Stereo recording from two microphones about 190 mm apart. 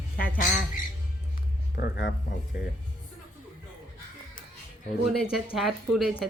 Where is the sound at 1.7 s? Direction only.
55° left (ahead or behind).